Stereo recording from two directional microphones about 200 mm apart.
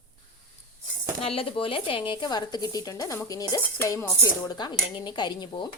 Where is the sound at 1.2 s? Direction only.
30° left (ahead or behind).